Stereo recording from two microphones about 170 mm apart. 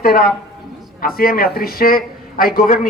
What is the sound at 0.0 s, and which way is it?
Speech, 60° left (ahead or behind).